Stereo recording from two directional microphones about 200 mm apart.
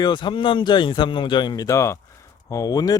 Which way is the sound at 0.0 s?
20° left (ahead or behind).